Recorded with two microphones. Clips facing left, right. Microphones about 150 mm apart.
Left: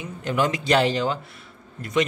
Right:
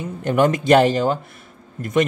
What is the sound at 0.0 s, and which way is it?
A man's voice, 50° right (ahead or behind).